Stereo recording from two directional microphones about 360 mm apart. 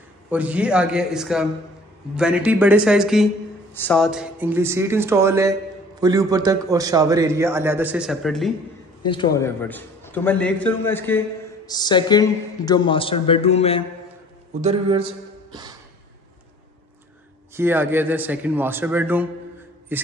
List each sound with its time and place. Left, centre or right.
0.3 s a man's voice: centre
9.1 s a man's voice: centre
14.5 s speech: centre
17.6 s a man's voice: centre